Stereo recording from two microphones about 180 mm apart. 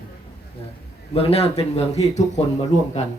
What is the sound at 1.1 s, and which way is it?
Speech, 35° left (ahead or behind).